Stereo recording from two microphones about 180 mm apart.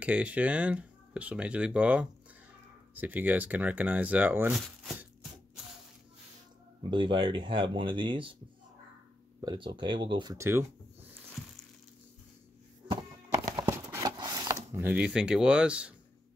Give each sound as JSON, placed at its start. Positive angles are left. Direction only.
{"t": 0.0, "sound": "speech", "side_deg": -5}
{"t": 6.9, "sound": "speech", "side_deg": -25}
{"t": 9.4, "sound": "speech", "side_deg": -25}
{"t": 13.6, "sound": "a sound", "side_deg": -20}